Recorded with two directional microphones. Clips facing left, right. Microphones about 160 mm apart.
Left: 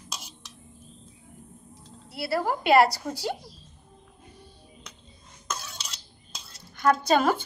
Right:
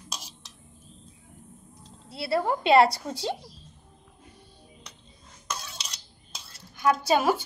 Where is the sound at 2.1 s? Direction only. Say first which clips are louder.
Right 1 dB; 25° right (ahead or behind).